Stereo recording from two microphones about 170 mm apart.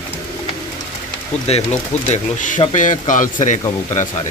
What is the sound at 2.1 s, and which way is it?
A man's voice, 50° left (ahead or behind).